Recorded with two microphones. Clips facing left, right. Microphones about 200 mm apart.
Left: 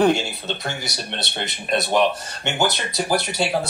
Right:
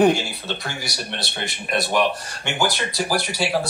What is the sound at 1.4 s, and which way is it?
Speech, 20° left (ahead or behind).